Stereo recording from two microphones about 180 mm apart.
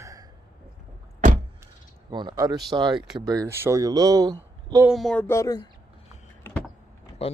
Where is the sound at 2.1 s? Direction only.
25° right (ahead or behind).